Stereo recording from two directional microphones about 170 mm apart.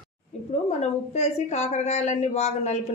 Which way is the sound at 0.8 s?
40° left (ahead or behind).